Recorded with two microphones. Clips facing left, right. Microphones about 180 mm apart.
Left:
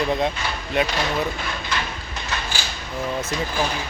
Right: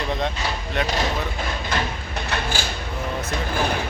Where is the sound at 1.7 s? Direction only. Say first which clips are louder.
Right 3 dB; 50° right (ahead or behind).